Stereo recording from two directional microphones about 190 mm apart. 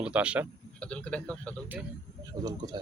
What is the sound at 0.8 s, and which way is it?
Speech, 5° left (ahead or behind).